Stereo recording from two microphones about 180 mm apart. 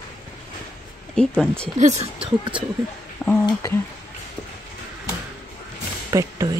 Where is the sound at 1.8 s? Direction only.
40° right (ahead or behind).